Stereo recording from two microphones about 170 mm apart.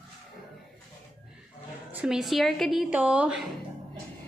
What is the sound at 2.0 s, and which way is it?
A woman's voice, centre (ahead or behind).